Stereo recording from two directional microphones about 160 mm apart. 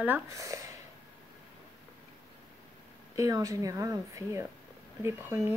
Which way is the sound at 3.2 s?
20° right (ahead or behind).